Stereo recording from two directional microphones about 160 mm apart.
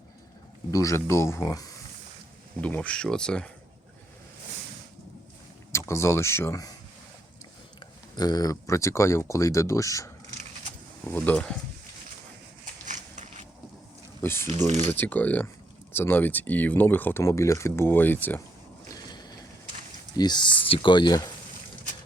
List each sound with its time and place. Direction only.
0.7 s speech: 20° left (ahead or behind)
2.6 s speech: 10° left (ahead or behind)
5.7 s speech: 15° left (ahead or behind)
8.1 s speech: 25° left (ahead or behind)
11.1 s speech: 10° left (ahead or behind)
12.8 s biting: 50° right (ahead or behind)
14.2 s speech: 15° left (ahead or behind)
18.9 s a sound: 25° left (ahead or behind)
20.1 s speech: 25° left (ahead or behind)